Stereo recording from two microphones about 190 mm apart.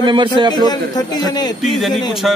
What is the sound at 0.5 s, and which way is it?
A man's voice, 20° left (ahead or behind).